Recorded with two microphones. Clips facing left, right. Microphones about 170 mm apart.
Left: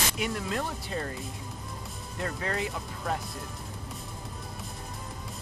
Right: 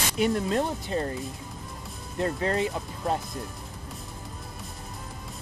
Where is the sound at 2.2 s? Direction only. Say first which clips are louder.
Right 6 dB; 30° right (ahead or behind).